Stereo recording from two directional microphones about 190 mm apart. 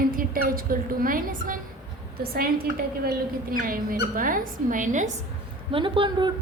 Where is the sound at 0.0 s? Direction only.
50° right (ahead or behind).